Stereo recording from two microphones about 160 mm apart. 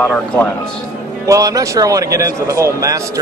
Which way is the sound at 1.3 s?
20° right (ahead or behind).